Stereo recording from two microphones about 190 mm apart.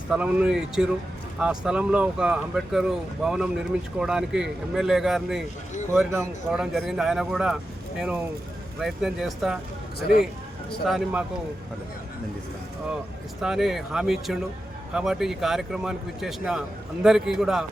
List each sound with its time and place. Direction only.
0.1 s speech: 5° right (ahead or behind)
10.0 s speech: 55° left (ahead or behind)
10.8 s speech: 5° right (ahead or behind)
13.4 s speech: centre (ahead or behind)